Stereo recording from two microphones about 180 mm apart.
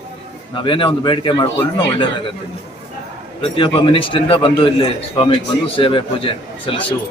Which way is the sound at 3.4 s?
30° left (ahead or behind).